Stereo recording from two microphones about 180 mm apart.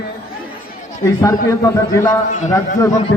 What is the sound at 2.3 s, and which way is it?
Speech, 45° left (ahead or behind).